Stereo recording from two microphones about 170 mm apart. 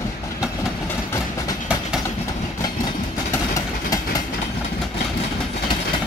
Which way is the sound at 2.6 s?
20° left (ahead or behind).